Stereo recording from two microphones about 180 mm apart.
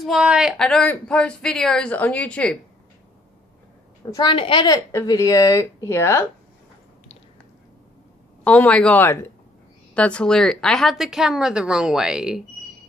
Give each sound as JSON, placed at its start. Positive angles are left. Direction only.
{"t": 0.0, "sound": "speech", "side_deg": -5}
{"t": 4.1, "sound": "a woman's voice", "side_deg": 25}
{"t": 8.5, "sound": "speech", "side_deg": 5}